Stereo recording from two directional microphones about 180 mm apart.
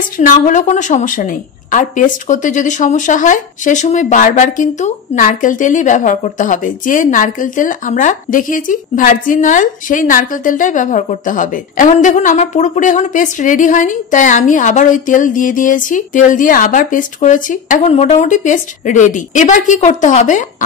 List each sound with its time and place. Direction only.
0.2 s a woman's voice: 45° left (ahead or behind)